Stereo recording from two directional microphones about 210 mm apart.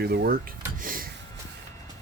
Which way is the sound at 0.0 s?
50° right (ahead or behind).